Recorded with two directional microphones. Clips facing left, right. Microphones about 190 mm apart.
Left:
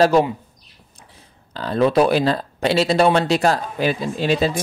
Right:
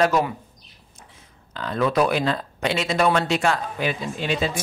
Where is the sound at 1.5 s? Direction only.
35° left (ahead or behind).